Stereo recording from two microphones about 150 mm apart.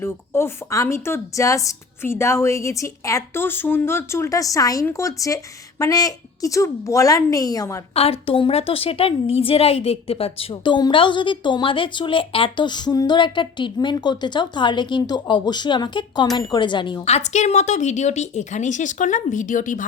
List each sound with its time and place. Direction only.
0.0 s speech: 15° left (ahead or behind)
7.9 s a woman's voice: 40° left (ahead or behind)
17.1 s a woman's voice: 50° left (ahead or behind)